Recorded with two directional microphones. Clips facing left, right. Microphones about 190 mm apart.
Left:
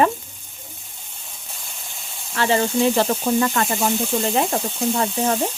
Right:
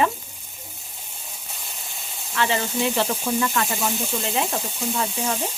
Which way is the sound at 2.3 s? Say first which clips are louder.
Left 5 dB; 40° left (ahead or behind).